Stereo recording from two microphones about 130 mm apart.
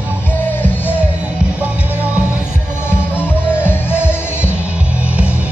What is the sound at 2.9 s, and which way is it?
Music, 15° left (ahead or behind).